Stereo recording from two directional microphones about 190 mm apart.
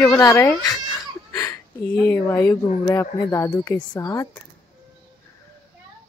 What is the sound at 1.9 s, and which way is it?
Speech, 10° left (ahead or behind).